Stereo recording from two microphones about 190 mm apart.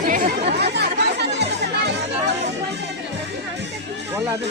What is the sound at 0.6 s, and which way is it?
Chatter, 60° right (ahead or behind).